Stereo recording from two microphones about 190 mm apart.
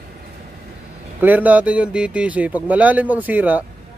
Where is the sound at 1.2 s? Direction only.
10° right (ahead or behind).